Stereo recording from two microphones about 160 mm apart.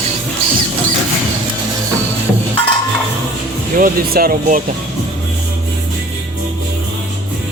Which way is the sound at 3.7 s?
65° right (ahead or behind).